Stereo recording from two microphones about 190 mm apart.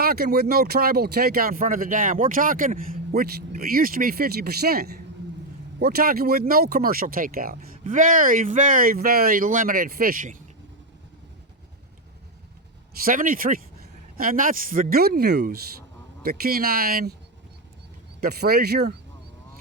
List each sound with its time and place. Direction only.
0.0 s speech: 55° right (ahead or behind)
13.1 s speech: 45° right (ahead or behind)
18.2 s speech: 55° right (ahead or behind)